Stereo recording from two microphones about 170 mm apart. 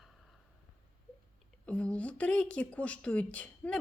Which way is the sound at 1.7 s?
10° left (ahead or behind).